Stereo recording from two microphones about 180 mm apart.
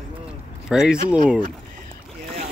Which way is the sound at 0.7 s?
5° right (ahead or behind).